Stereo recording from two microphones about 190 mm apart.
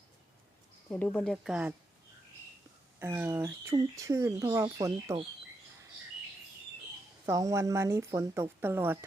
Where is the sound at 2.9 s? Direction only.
10° right (ahead or behind).